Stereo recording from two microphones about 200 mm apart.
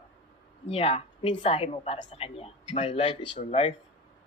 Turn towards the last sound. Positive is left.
turn(degrees=30)  # may be behind; listen again after turning